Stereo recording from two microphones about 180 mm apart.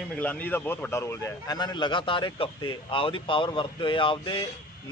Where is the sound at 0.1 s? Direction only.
10° left (ahead or behind).